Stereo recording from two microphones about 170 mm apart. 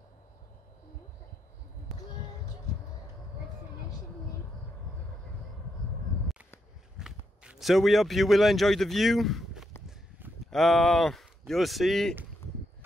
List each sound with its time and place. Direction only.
1.9 s music: centre (ahead or behind)
7.0 s speech: 5° right (ahead or behind)
9.8 s a sound: 10° right (ahead or behind)
10.5 s speech: centre (ahead or behind)